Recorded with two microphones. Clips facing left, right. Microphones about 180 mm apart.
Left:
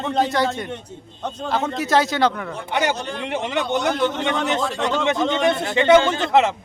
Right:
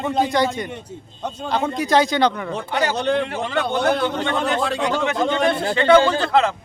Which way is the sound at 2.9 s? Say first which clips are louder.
Right 9 dB; 65° right (ahead or behind).